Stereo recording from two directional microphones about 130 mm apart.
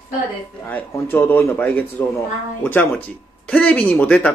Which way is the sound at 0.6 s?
15° left (ahead or behind).